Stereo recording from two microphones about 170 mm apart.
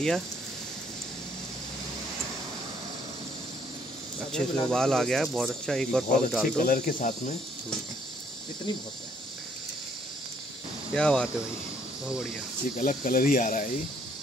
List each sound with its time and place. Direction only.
4.3 s cricket: 5° left (ahead or behind)
6.6 s speech: 55° left (ahead or behind)
10.9 s cricket: 5° left (ahead or behind)
12.6 s speech: 50° left (ahead or behind)